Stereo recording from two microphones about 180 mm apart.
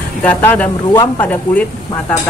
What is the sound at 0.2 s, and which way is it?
Speech, 10° left (ahead or behind).